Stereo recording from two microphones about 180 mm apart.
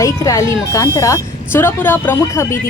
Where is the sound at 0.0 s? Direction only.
20° left (ahead or behind).